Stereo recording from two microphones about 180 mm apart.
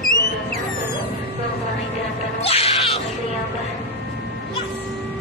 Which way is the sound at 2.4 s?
35° left (ahead or behind).